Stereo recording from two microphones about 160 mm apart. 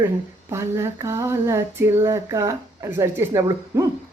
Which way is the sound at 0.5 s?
15° right (ahead or behind).